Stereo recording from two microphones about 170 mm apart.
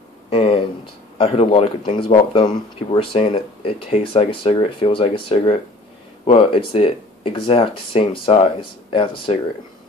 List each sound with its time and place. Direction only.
0.3 s speech: 35° left (ahead or behind)